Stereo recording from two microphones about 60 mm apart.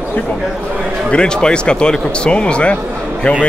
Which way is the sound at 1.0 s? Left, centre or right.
Centre.